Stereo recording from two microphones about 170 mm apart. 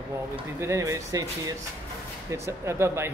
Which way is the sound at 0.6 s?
20° right (ahead or behind).